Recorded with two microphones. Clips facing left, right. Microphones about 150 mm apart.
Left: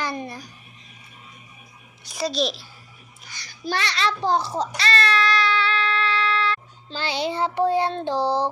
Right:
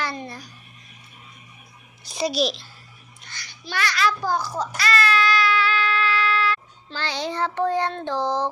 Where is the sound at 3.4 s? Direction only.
40° left (ahead or behind).